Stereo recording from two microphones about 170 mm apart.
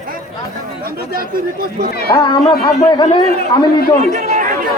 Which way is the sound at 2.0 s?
25° left (ahead or behind).